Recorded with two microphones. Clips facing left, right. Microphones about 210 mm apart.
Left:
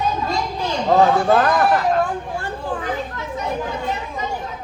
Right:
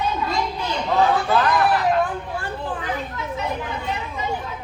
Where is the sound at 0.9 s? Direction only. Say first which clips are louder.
Left 5 dB; 45° left (ahead or behind).